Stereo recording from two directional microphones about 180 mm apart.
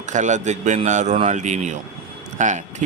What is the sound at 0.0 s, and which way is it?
Speech, 40° right (ahead or behind).